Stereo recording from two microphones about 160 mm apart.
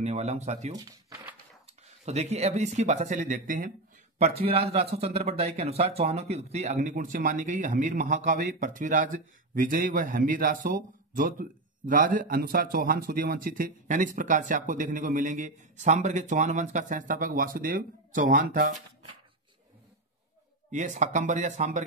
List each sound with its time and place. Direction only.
0.0 s speech: 45° right (ahead or behind)
0.7 s speech: 25° right (ahead or behind)
1.7 s speech: 40° right (ahead or behind)
4.2 s a man's voice: 40° right (ahead or behind); by 18.8 s 55° right (ahead or behind)
20.7 s speech: 50° right (ahead or behind)